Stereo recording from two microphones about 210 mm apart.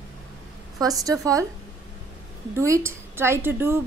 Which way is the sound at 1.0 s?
15° right (ahead or behind).